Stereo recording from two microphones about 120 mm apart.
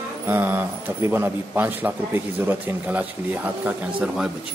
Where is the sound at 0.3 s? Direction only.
15° right (ahead or behind).